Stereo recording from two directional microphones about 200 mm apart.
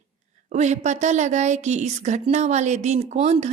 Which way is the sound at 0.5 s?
35° right (ahead or behind).